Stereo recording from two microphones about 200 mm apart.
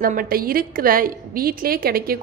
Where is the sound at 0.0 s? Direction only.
45° right (ahead or behind).